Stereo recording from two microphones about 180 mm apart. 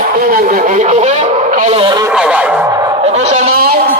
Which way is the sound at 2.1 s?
5° right (ahead or behind).